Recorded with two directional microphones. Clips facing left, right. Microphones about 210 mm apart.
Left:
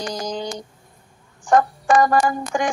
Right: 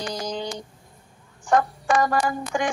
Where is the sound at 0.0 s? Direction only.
45° left (ahead or behind).